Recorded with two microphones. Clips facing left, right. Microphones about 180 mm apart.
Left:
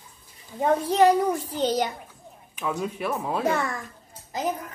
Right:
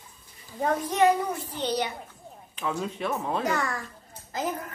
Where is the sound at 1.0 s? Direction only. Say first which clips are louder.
Left 3 dB; 40° left (ahead or behind).